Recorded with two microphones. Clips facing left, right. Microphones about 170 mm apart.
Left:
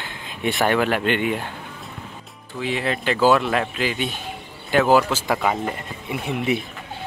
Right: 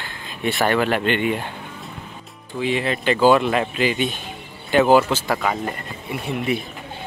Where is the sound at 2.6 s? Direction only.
Centre (ahead or behind).